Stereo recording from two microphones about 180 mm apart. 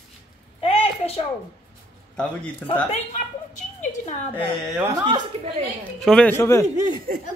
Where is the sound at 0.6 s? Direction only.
30° left (ahead or behind).